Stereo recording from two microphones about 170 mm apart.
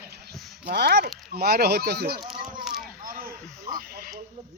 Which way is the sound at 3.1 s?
55° right (ahead or behind).